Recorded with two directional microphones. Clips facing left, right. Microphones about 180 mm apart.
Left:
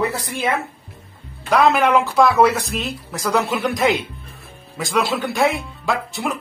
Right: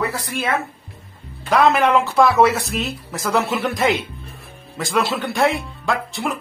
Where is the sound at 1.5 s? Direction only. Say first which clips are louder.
Even; centre (ahead or behind).